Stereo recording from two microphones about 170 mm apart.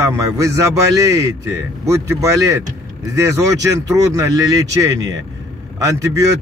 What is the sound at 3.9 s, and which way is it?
Speech, 20° right (ahead or behind).